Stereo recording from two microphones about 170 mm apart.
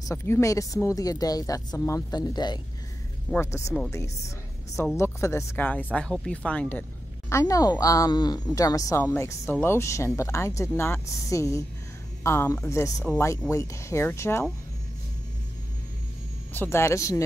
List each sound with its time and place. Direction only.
0.1 s speech: 15° left (ahead or behind)
16.5 s speech: 15° left (ahead or behind)